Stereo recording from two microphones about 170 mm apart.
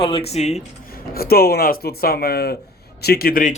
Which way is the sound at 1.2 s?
65° left (ahead or behind).